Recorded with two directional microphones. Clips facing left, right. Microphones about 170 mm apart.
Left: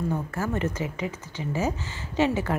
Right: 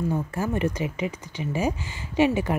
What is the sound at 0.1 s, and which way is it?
A woman's voice, 15° right (ahead or behind).